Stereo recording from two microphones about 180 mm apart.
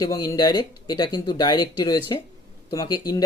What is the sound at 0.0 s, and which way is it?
Speech, 20° left (ahead or behind).